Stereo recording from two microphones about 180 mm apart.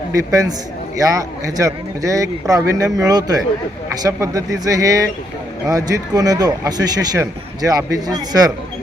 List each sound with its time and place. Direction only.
0.1 s speech: 20° right (ahead or behind)